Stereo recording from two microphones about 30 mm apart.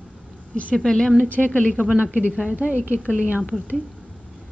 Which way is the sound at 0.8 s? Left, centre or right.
Left.